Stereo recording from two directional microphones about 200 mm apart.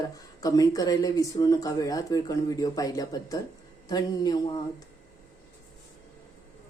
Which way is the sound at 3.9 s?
20° left (ahead or behind).